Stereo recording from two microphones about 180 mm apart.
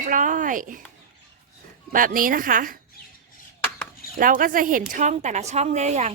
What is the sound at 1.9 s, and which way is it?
Speech, 50° right (ahead or behind).